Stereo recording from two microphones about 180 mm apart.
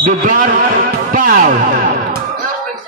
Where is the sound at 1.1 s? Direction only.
50° right (ahead or behind).